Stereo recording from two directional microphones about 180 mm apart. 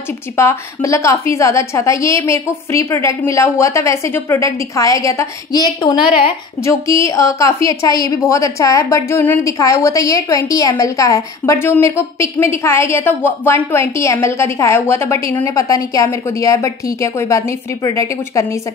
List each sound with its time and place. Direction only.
0.4 s a woman's voice: 15° left (ahead or behind)